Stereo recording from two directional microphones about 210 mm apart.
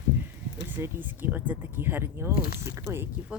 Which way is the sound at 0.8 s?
10° right (ahead or behind).